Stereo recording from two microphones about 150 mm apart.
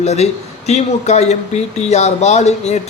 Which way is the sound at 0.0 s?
45° left (ahead or behind).